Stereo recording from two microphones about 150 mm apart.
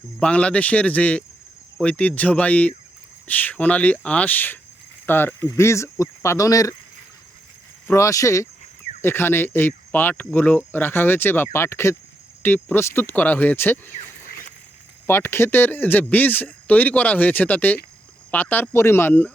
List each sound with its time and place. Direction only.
0.2 s speech: 10° left (ahead or behind)
7.9 s speech: 20° left (ahead or behind)
15.0 s speech: 15° left (ahead or behind)